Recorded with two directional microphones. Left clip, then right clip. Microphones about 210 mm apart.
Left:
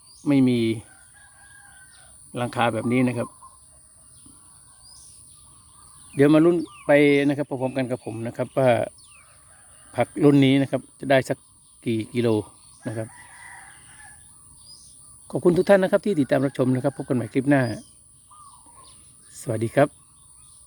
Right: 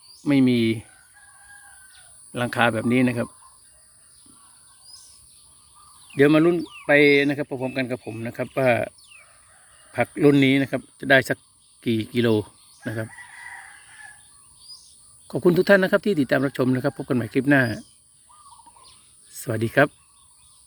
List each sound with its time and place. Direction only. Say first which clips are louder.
0.2 s speech: right 1 dB; 5° left (ahead or behind)
2.3 s speech: right 2 dB; centre (ahead or behind)
6.1 s speech: even; 15° left (ahead or behind)
6.6 s a sound: left 1 dB; 55° left (ahead or behind)
6.8 s speech: right 1 dB; 15° left (ahead or behind)
9.9 s speech: even; 10° left (ahead or behind)
15.3 s speech: even; 5° left (ahead or behind)
19.3 s speech: right 1 dB; 5° left (ahead or behind)